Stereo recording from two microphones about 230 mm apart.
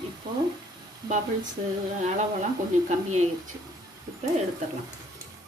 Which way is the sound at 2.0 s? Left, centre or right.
Right.